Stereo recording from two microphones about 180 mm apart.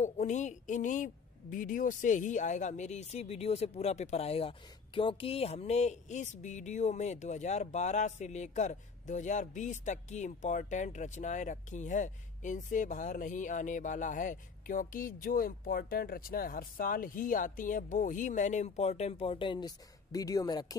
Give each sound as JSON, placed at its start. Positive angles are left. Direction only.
{"t": 0.0, "sound": "speech", "side_deg": 40}